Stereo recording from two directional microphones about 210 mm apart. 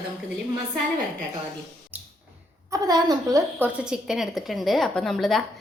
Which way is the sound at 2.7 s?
15° right (ahead or behind).